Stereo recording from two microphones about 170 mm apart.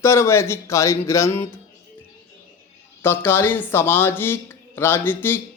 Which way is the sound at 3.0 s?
15° left (ahead or behind).